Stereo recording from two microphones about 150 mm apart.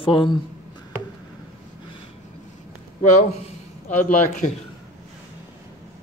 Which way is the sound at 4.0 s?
55° left (ahead or behind).